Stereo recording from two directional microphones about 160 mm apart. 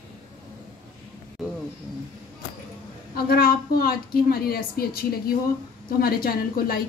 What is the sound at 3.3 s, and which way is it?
A woman's voice, 70° left (ahead or behind).